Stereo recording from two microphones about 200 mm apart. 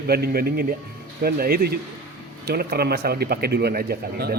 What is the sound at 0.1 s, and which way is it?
Speech, 50° right (ahead or behind).